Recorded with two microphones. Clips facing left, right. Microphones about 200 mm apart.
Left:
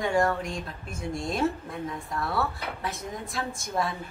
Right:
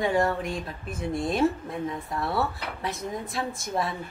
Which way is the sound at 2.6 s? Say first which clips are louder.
Right 2 dB; centre (ahead or behind).